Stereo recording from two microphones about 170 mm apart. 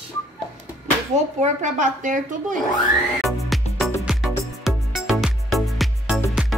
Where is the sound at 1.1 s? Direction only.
45° right (ahead or behind).